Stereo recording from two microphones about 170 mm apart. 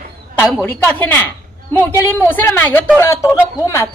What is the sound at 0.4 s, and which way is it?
A woman's voice, 10° left (ahead or behind).